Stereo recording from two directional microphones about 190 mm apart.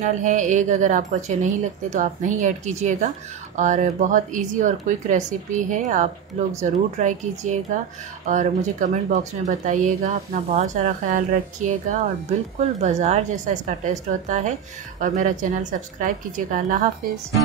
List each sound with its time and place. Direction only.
0.0 s speech: 40° right (ahead or behind)